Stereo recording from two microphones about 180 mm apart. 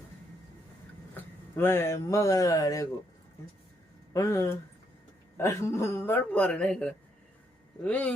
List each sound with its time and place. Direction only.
1.1 s speech: 10° left (ahead or behind)
4.1 s a man's voice: 15° left (ahead or behind)